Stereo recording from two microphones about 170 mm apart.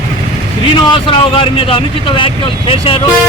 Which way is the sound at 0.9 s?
30° left (ahead or behind).